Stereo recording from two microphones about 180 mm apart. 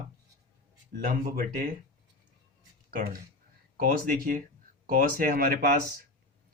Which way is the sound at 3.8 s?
50° right (ahead or behind).